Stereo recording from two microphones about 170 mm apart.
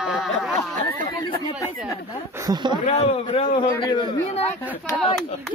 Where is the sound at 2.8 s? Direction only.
40° left (ahead or behind).